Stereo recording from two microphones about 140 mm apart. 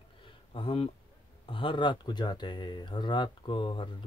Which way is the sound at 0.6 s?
40° left (ahead or behind).